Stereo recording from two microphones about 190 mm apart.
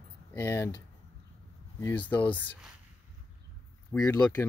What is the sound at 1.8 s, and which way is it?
Speech, 10° left (ahead or behind).